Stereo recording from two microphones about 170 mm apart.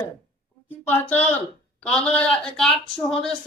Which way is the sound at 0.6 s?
10° left (ahead or behind).